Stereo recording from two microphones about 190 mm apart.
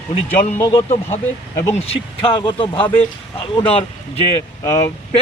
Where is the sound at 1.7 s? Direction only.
30° left (ahead or behind).